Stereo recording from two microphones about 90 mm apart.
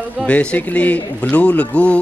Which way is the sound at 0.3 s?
15° left (ahead or behind).